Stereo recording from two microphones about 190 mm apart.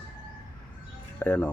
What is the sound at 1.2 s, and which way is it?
Speech, 10° left (ahead or behind).